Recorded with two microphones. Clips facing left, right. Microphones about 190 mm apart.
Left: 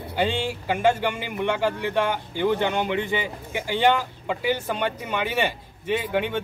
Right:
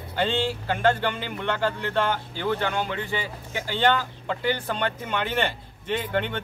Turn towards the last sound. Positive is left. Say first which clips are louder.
# left 2 dB
turn(degrees=10)  # may be behind; listen again after turning